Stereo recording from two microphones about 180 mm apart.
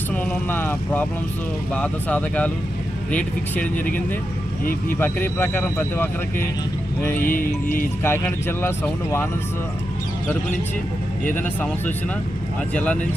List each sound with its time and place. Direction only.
0.1 s speech: 10° left (ahead or behind)
7.2 s speech: 50° left (ahead or behind)
8.0 s speech: 10° left (ahead or behind)
11.3 s speech: 10° left (ahead or behind)